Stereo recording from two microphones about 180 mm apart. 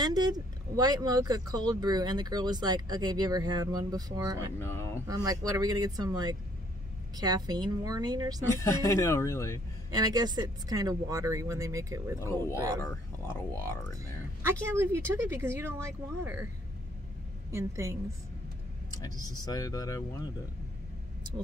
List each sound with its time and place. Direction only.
0.0 s speech: 20° right (ahead or behind)
4.6 s speech: 15° left (ahead or behind)
5.0 s speech: 20° right (ahead or behind)
8.5 s speech: 15° left (ahead or behind)
9.8 s speech: 20° right (ahead or behind)
12.2 s speech: 15° left (ahead or behind)
14.7 s speech: 15° right (ahead or behind)
17.5 s speech: 15° right (ahead or behind)
18.9 s speech: 20° left (ahead or behind)